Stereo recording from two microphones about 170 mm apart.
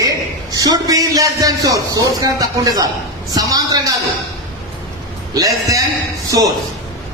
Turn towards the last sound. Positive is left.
turn(degrees=-20)  # may be behind; listen again after turning